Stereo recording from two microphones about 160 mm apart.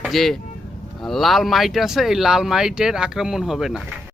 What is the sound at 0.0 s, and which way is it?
Speech, centre (ahead or behind).